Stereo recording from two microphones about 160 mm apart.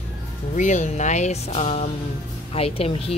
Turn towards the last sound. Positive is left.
turn(degrees=35)  # may be behind; listen again after turning